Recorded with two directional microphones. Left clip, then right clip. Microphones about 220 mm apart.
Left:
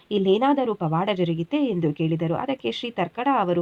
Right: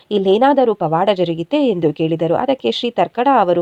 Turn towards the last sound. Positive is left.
turn(degrees=-30)  # may be behind; listen again after turning